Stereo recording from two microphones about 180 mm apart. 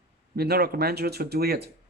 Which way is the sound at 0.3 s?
60° right (ahead or behind).